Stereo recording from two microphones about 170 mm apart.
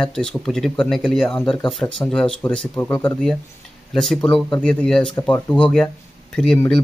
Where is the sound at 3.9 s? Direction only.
5° left (ahead or behind).